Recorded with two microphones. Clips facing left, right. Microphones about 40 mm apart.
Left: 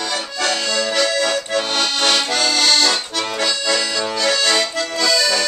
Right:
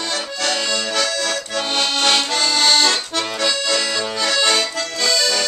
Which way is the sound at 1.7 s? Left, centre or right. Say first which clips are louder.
Right 3 dB; centre.